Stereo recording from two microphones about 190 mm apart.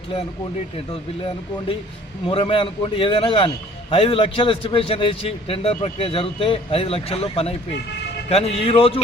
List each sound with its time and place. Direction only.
2.2 s a man's voice: 30° left (ahead or behind)